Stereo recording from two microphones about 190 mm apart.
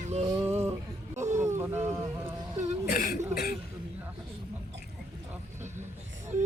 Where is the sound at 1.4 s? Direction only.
15° right (ahead or behind).